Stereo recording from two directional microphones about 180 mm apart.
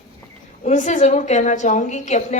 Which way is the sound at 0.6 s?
40° left (ahead or behind).